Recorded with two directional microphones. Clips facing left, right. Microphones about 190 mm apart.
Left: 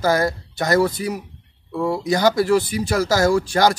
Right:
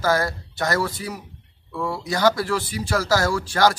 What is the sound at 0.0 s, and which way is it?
Speech, 15° left (ahead or behind).